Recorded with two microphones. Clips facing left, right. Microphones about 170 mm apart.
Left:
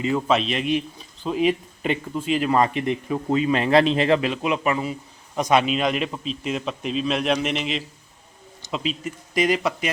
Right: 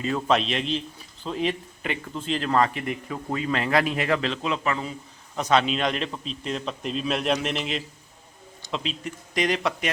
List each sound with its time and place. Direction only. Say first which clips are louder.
0.3 s a man's voice: left 2 dB; centre (ahead or behind)
2.6 s a man's voice: left 6 dB; 25° left (ahead or behind)
4.2 s a man's voice: left 4 dB; 10° left (ahead or behind)